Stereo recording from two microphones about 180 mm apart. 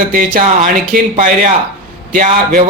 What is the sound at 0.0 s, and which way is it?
Speech, 50° right (ahead or behind).